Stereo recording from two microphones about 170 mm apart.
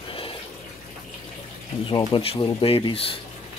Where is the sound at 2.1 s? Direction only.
35° left (ahead or behind).